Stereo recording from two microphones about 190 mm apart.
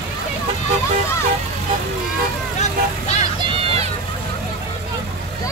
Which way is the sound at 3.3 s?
25° right (ahead or behind).